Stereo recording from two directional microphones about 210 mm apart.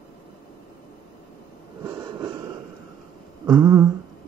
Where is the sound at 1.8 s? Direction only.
20° right (ahead or behind).